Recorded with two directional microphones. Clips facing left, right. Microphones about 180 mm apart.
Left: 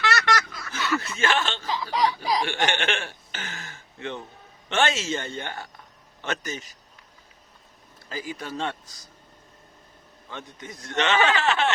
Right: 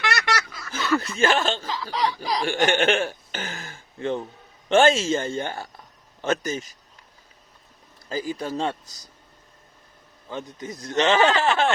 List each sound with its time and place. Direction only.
0.0 s a sound: 10° right (ahead or behind)
0.7 s snicker: 35° right (ahead or behind)
1.9 s chuckle: 10° left (ahead or behind)
2.4 s a sound: 40° right (ahead or behind)
4.9 s speech: 30° right (ahead or behind)
8.1 s speech: 45° right (ahead or behind)
8.4 s speech: 30° right (ahead or behind)
10.2 s speech: 35° right (ahead or behind)